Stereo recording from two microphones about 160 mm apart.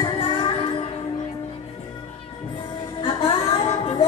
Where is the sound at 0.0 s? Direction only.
30° left (ahead or behind).